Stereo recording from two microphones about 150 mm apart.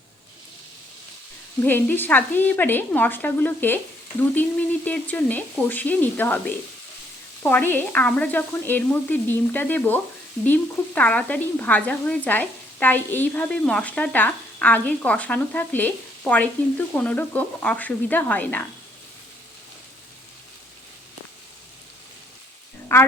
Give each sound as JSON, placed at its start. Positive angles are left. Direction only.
{"t": 1.6, "sound": "speech", "side_deg": 15}
{"t": 22.9, "sound": "a woman's voice", "side_deg": 15}